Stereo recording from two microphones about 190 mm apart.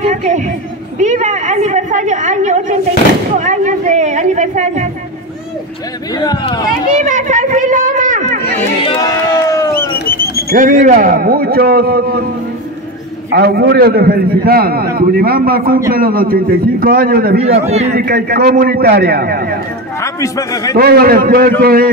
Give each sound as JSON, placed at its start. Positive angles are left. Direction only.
{"t": 0.0, "sound": "a woman's voice", "side_deg": -40}
{"t": 6.1, "sound": "speech", "side_deg": 20}
{"t": 7.0, "sound": "a sound", "side_deg": -40}
{"t": 9.5, "sound": "a sound", "side_deg": 15}
{"t": 9.9, "sound": "a sound", "side_deg": 55}
{"t": 10.5, "sound": "a man's voice", "side_deg": -45}
{"t": 13.3, "sound": "a man's voice", "side_deg": -55}
{"t": 17.6, "sound": "a woman's voice", "side_deg": -35}
{"t": 17.9, "sound": "a man's voice", "side_deg": -55}
{"t": 20.0, "sound": "a man's voice", "side_deg": 15}
{"t": 20.7, "sound": "a man's voice", "side_deg": -50}